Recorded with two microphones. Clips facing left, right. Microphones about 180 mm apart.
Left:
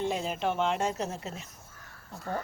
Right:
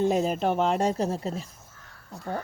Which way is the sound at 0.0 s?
45° right (ahead or behind).